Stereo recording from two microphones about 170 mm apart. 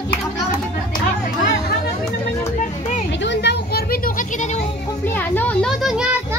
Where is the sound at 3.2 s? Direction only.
80° left; by 4.6 s 50° left (ahead or behind).